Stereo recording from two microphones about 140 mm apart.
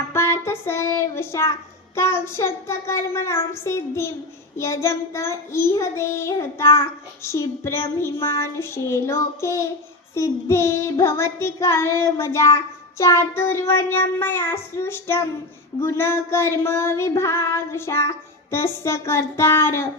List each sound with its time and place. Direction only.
0.1 s child singing: 20° left (ahead or behind)